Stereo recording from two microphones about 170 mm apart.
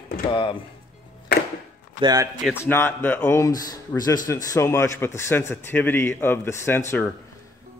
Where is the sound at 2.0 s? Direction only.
25° right (ahead or behind).